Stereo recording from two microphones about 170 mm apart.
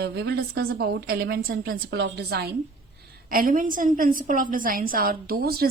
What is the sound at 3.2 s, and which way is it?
A woman's voice, 55° right (ahead or behind).